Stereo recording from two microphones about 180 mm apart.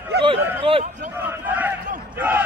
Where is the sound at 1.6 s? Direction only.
10° right (ahead or behind).